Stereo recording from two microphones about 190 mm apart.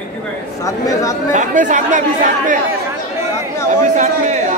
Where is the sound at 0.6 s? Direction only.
15° left (ahead or behind).